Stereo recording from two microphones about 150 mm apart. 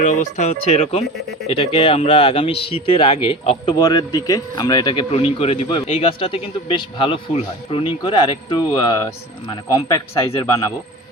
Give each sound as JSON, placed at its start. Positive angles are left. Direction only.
{"t": 0.0, "sound": "speech", "side_deg": 50}